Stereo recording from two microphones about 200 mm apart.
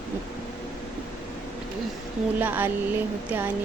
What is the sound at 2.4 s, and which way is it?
Speech, 10° right (ahead or behind).